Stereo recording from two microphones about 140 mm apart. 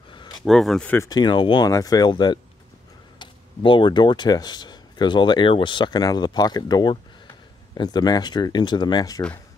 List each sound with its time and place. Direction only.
0.1 s a sound: 35° left (ahead or behind)
0.5 s speech: centre (ahead or behind)
1.0 s speech: 30° left (ahead or behind)